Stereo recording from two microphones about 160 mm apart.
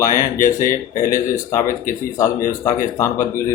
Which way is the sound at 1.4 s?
15° left (ahead or behind).